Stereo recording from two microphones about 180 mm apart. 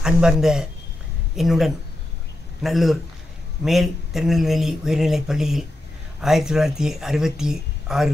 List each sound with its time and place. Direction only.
0.0 s speech: 5° right (ahead or behind)